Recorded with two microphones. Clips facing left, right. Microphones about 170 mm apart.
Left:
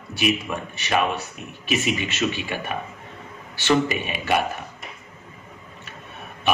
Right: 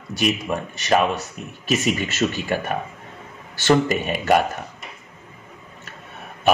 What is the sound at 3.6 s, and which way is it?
Mantra, 45° right (ahead or behind).